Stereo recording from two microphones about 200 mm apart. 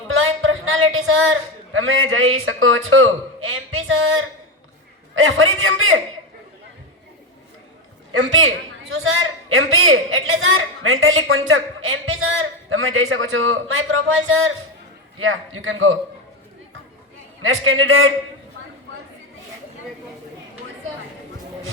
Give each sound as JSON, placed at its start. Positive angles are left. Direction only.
{"t": 0.1, "sound": "a sound", "side_deg": -90}
{"t": 1.7, "sound": "a man's voice", "side_deg": -85}
{"t": 8.1, "sound": "a man's voice", "side_deg": -75}
{"t": 15.2, "sound": "a man's voice", "side_deg": -80}
{"t": 17.4, "sound": "a man's voice", "side_deg": -90}